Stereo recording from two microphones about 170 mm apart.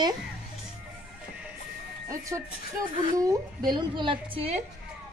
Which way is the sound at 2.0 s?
20° right (ahead or behind).